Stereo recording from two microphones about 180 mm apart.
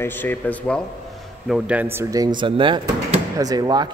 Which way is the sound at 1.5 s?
10° right (ahead or behind).